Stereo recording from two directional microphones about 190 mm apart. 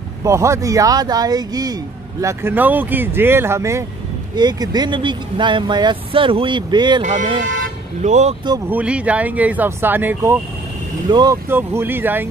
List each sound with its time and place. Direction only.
0.2 s speech: 15° right (ahead or behind)
7.0 s speech: 40° right (ahead or behind)
8.6 s speech: 5° right (ahead or behind)
11.1 s speech: 20° right (ahead or behind)